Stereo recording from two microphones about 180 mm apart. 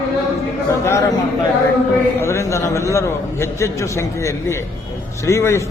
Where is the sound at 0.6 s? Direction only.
15° left (ahead or behind).